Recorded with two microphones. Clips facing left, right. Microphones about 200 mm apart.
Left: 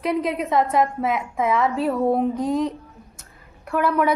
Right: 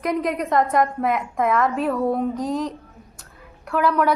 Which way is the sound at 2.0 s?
30° left (ahead or behind).